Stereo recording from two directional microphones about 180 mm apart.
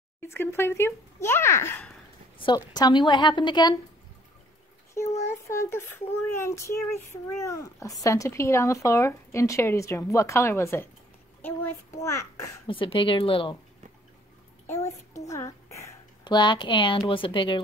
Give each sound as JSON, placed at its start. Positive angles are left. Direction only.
{"t": 0.3, "sound": "speech", "side_deg": 15}
{"t": 2.3, "sound": "a woman's voice", "side_deg": 25}
{"t": 5.3, "sound": "speech", "side_deg": 15}
{"t": 12.6, "sound": "a woman's voice", "side_deg": 30}
{"t": 14.7, "sound": "a child's voice", "side_deg": 15}